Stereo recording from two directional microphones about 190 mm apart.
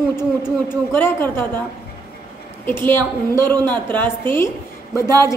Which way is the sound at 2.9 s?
10° left (ahead or behind).